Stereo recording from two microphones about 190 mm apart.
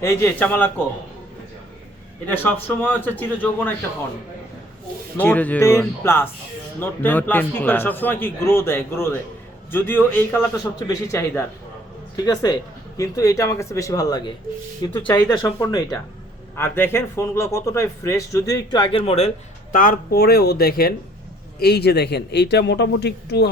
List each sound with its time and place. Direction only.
0.0 s a man's voice: 15° left (ahead or behind)
2.2 s a man's voice: 10° left (ahead or behind)
5.1 s a man's voice: 10° left (ahead or behind); by 19.3 s 35° left (ahead or behind)
19.7 s speech: 45° left (ahead or behind)